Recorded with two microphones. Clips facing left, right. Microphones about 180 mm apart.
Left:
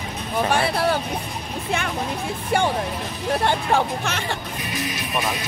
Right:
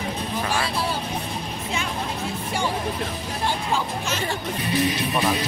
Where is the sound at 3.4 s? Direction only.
65° left (ahead or behind).